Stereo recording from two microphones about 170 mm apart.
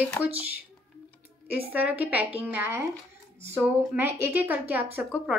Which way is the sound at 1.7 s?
10° right (ahead or behind).